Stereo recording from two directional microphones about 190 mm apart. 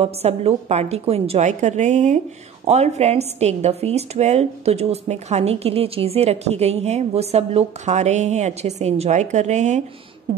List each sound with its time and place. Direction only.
0.0 s a woman's voice: 35° right (ahead or behind)